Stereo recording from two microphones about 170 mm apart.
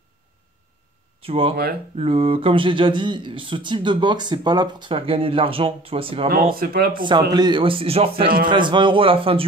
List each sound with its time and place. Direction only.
1.2 s speech: 35° right (ahead or behind)
6.2 s speech: 60° right (ahead or behind)
6.9 s a man's voice: 30° right (ahead or behind)